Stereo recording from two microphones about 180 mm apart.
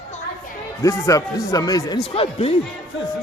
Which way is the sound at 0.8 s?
15° left (ahead or behind).